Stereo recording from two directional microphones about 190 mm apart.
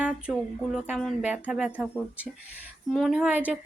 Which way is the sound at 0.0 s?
5° right (ahead or behind).